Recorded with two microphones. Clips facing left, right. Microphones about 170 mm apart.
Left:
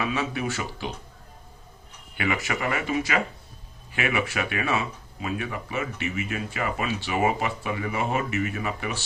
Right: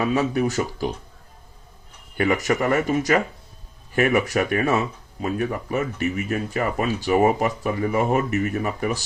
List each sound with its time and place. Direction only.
0.0 s speech: 40° right (ahead or behind)
2.1 s speech: 40° right (ahead or behind)